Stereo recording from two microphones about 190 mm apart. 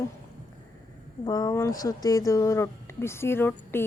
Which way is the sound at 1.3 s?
20° left (ahead or behind).